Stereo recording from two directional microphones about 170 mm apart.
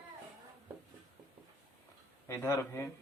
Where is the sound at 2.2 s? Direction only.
15° left (ahead or behind).